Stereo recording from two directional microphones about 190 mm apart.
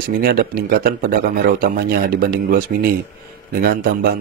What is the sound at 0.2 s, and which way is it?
A man's voice, 55° right (ahead or behind).